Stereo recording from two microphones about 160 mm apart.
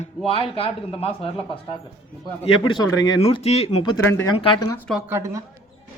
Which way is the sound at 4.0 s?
15° left (ahead or behind).